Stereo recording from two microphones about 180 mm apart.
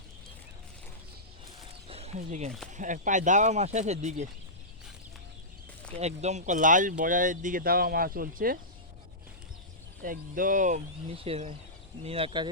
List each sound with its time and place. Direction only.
1.9 s a sound: 35° right (ahead or behind)
2.7 s speech: 45° right (ahead or behind)
5.9 s speech: 40° right (ahead or behind)
10.0 s speech: 50° right (ahead or behind)
11.1 s speech: 30° right (ahead or behind)